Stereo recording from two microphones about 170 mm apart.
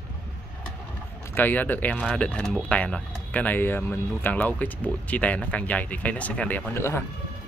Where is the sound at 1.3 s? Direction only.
10° left (ahead or behind).